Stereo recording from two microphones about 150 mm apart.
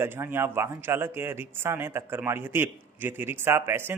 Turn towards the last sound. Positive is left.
turn(degrees=-15)  # may be behind; listen again after turning